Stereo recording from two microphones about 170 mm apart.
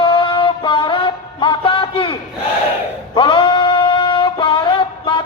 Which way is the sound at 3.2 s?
30° left (ahead or behind).